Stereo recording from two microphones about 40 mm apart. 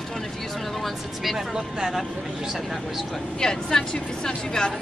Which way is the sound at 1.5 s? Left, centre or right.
Centre.